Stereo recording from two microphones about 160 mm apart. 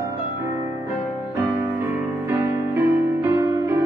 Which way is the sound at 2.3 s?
15° right (ahead or behind).